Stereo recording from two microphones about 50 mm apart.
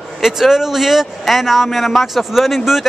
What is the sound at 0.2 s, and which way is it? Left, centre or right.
A man's voice, centre.